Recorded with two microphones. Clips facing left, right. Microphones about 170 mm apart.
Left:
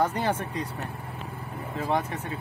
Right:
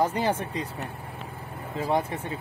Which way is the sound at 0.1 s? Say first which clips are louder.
Right 1 dB; 10° right (ahead or behind).